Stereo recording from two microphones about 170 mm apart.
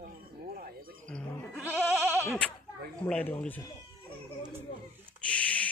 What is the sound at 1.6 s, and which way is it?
Goat, 15° right (ahead or behind).